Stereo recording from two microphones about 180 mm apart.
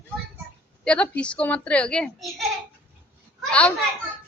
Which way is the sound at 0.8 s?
5° left (ahead or behind).